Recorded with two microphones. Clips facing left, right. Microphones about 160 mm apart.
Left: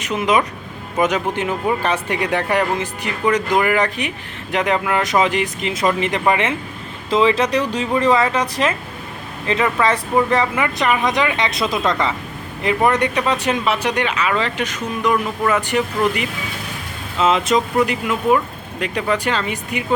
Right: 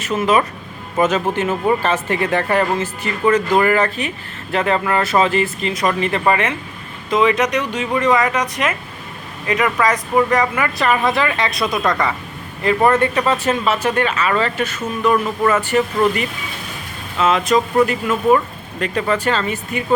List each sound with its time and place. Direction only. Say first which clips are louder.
0.0 s speech: right 1 dB; 15° left (ahead or behind)
17.7 s speech: right 2 dB; 10° left (ahead or behind)